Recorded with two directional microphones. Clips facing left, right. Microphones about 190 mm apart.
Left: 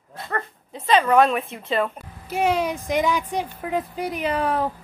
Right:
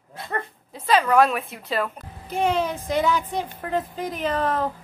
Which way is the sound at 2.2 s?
10° left (ahead or behind).